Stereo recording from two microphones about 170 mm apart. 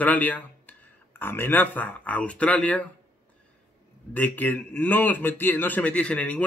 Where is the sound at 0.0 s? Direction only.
10° left (ahead or behind).